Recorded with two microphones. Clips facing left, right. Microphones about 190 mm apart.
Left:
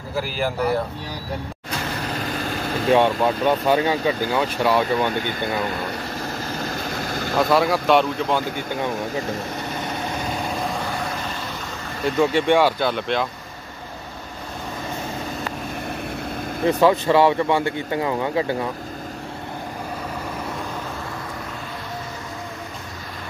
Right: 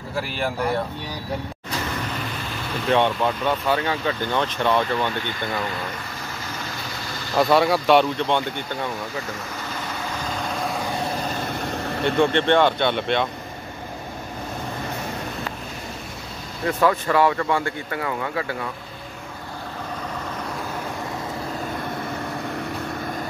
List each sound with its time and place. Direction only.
0.1 s speech: centre (ahead or behind)
2.9 s speech: 15° left (ahead or behind)
6.6 s vehicle: 50° left (ahead or behind)
7.3 s speech: centre (ahead or behind)
12.0 s speech: 5° left (ahead or behind)
16.6 s speech: 25° left (ahead or behind)